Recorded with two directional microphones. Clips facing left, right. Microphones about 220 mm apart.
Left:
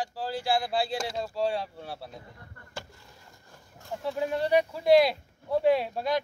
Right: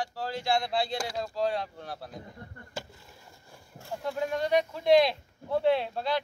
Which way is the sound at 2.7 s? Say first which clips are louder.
Right 2 dB; 15° right (ahead or behind).